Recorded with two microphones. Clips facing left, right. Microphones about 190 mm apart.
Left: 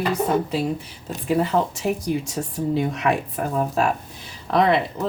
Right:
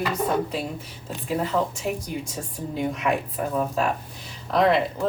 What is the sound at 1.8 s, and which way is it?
Speech, 75° left (ahead or behind).